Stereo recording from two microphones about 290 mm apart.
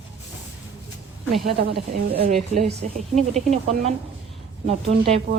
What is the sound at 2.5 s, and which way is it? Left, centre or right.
Speech, right.